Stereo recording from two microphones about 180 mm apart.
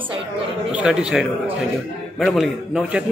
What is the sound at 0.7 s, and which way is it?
A man's voice, 5° right (ahead or behind).